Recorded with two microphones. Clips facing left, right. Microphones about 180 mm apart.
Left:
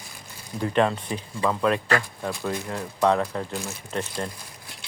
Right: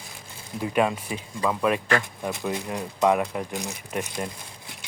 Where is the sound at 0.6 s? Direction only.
10° right (ahead or behind).